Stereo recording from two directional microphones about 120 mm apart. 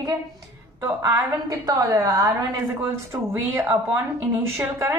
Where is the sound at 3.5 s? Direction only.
20° right (ahead or behind).